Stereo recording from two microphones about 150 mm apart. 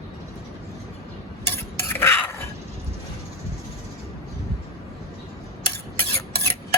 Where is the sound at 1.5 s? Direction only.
15° left (ahead or behind).